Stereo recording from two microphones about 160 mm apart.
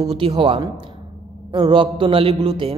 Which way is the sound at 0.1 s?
35° right (ahead or behind).